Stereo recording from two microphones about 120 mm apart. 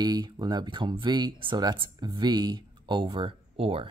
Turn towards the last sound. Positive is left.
turn(degrees=-50)  # may be behind; listen again after turning